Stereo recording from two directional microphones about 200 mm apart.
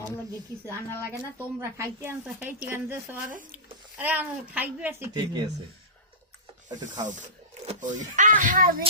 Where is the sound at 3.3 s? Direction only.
40° right (ahead or behind).